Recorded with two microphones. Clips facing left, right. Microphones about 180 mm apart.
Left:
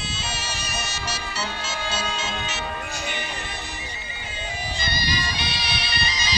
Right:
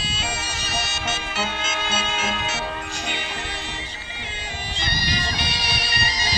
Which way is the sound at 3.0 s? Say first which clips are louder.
Right 1 dB; 65° right (ahead or behind).